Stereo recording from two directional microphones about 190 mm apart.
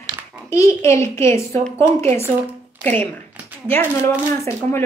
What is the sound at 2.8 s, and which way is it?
Speech, 10° left (ahead or behind).